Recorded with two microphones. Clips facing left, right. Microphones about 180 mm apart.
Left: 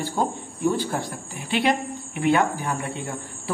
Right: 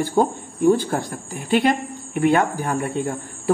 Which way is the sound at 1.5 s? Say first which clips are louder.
Right 4 dB; 45° right (ahead or behind).